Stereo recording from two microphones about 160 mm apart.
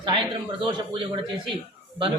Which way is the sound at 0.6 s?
30° right (ahead or behind).